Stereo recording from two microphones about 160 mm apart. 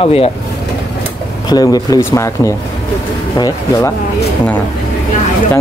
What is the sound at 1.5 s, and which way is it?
Speech, 25° left (ahead or behind).